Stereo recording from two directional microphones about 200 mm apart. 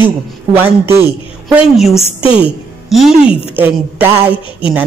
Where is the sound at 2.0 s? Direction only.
25° left (ahead or behind).